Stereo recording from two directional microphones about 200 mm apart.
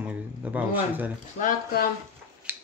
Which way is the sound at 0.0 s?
5° right (ahead or behind).